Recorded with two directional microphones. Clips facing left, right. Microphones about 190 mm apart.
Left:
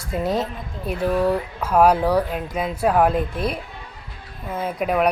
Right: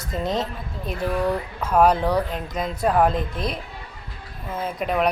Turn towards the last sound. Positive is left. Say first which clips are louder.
# left 2 dB
turn(degrees=5)  # may be behind; listen again after turning